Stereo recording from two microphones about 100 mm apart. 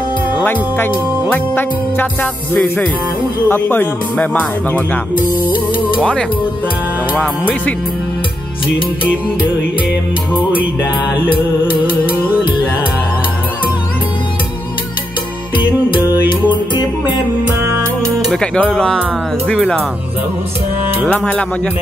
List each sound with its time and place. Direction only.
0.5 s speech: 20° left (ahead or behind)
1.3 s music: 20° left (ahead or behind)
2.5 s speech: 20° left (ahead or behind)
7.2 s speech: 15° left (ahead or behind)
11.1 s music: 60° left (ahead or behind)
16.0 s music: 20° right (ahead or behind)
18.3 s speech: 10° left (ahead or behind)
21.1 s speech: 10° left (ahead or behind)